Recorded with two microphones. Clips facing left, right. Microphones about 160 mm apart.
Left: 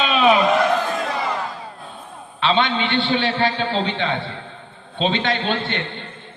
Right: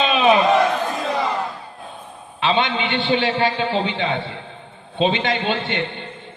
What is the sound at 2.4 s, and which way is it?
A man's voice, 15° right (ahead or behind).